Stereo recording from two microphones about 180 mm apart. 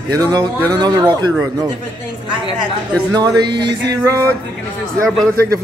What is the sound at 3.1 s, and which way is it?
Speech, 25° right (ahead or behind).